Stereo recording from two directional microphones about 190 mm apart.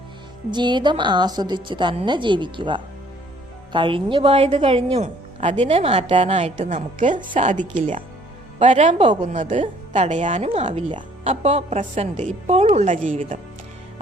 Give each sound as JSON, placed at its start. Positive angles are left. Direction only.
{"t": 0.5, "sound": "a woman's voice", "side_deg": -25}